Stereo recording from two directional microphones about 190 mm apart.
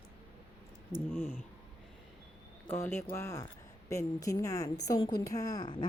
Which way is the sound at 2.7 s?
10° left (ahead or behind).